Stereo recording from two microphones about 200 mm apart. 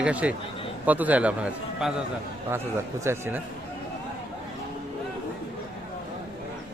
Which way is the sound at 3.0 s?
10° right (ahead or behind).